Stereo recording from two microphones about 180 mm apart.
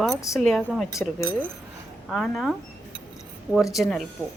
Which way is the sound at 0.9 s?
15° left (ahead or behind).